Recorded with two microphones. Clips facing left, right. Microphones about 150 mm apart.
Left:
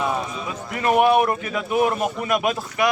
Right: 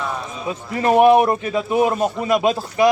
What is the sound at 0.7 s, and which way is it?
A man's voice, 30° right (ahead or behind).